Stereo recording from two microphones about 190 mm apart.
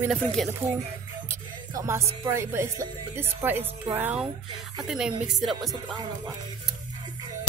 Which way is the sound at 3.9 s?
10° right (ahead or behind).